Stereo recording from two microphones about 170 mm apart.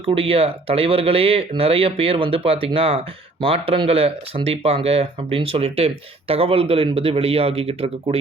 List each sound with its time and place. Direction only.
0.0 s speech: 35° right (ahead or behind)